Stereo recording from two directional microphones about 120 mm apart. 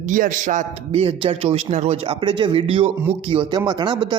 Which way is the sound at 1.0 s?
50° right (ahead or behind).